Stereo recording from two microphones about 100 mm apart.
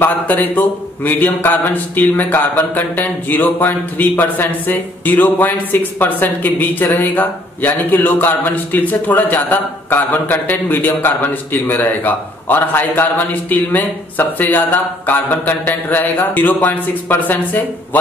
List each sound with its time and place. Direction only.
0.0 s speech: 15° left (ahead or behind)